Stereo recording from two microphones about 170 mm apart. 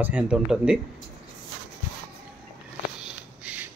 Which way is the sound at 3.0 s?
5° right (ahead or behind).